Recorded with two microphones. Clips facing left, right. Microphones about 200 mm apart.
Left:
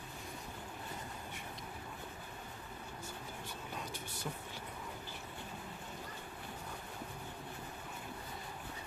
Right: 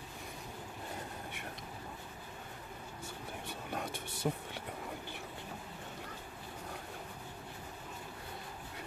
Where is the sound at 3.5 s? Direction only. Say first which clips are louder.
Right 6 dB; 60° right (ahead or behind).